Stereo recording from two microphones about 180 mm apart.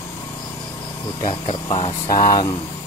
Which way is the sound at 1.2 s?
30° left (ahead or behind).